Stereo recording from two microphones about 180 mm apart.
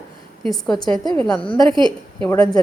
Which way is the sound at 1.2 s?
5° left (ahead or behind).